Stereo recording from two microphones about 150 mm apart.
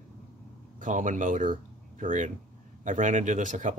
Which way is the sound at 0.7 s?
60° right (ahead or behind).